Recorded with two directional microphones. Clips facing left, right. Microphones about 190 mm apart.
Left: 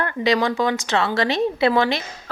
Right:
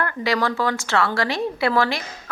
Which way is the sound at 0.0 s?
20° left (ahead or behind).